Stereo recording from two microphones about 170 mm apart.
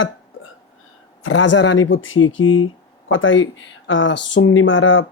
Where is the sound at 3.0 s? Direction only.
90° left.